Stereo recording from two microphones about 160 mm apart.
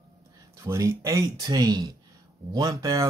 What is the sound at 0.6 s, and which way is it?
Speech, 20° right (ahead or behind).